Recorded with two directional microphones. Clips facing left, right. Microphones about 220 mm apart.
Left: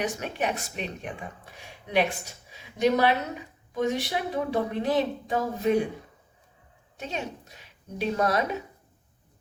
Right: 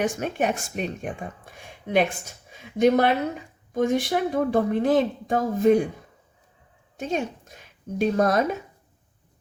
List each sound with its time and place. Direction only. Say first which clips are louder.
0.0 s speech: right 5 dB; 50° right (ahead or behind)
6.9 s speech: right 7 dB; 50° right (ahead or behind)